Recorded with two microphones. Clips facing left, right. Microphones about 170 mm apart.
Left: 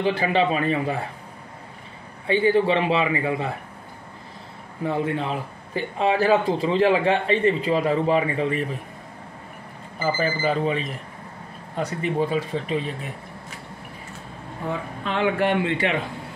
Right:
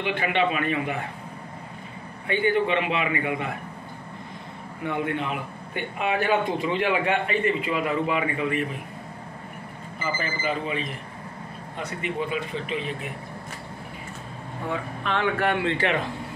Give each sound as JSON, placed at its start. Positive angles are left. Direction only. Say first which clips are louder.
{"t": 0.0, "sound": "speech", "louder": "left 3 dB", "side_deg": 35}
{"t": 2.2, "sound": "speech", "louder": "left 4 dB", "side_deg": 30}
{"t": 4.8, "sound": "speech", "louder": "left 3 dB", "side_deg": 30}
{"t": 9.9, "sound": "speech", "louder": "left 6 dB", "side_deg": 35}
{"t": 15.0, "sound": "speech", "louder": "left 3 dB", "side_deg": 15}